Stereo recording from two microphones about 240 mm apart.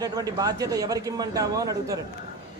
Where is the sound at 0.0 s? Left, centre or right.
Centre.